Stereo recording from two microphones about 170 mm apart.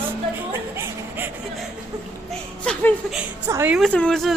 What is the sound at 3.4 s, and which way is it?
Speech, 15° right (ahead or behind).